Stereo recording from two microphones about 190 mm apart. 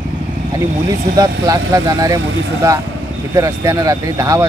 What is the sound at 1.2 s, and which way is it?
Speech, 20° right (ahead or behind).